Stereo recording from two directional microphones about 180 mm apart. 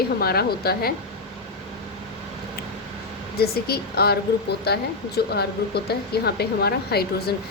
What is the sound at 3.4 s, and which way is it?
Speech, 60° left (ahead or behind).